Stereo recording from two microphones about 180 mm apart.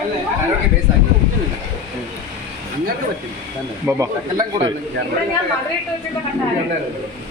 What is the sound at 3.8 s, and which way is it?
Speech, 20° right (ahead or behind).